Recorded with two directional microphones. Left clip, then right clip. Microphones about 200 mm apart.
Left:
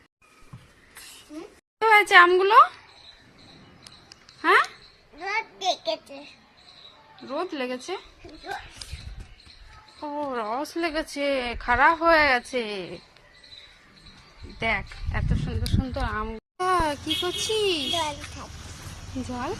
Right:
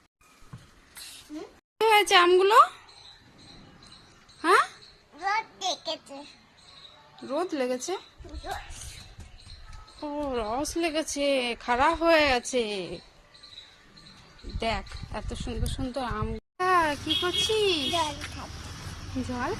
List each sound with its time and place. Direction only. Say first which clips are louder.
1.8 s speech: left 4 dB; 10° right (ahead or behind)
4.4 s a sound: left 2 dB; 10° right (ahead or behind)
7.3 s speech: right 1 dB; 10° right (ahead or behind)
10.0 s speech: left 1 dB; 10° right (ahead or behind)
14.6 s speech: left 4 dB; 15° right (ahead or behind)
16.6 s a child's voice: even; 10° left (ahead or behind)